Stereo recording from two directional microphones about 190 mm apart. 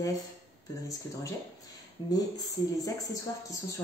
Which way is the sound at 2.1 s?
20° left (ahead or behind).